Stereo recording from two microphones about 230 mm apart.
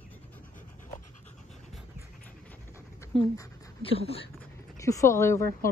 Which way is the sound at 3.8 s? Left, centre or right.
Left.